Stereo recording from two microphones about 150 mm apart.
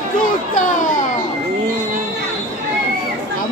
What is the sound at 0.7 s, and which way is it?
Children playing, 60° left (ahead or behind).